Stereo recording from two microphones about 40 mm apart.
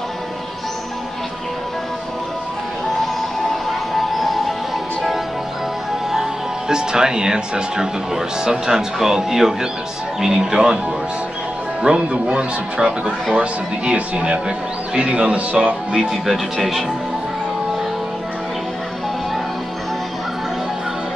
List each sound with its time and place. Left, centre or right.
3.9 s a sound: centre
6.7 s speech: centre
11.8 s speech: right
15.9 s speech: centre